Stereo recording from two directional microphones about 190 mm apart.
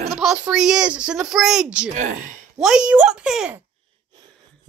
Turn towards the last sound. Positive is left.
turn(degrees=-5)  # may be behind; listen again after turning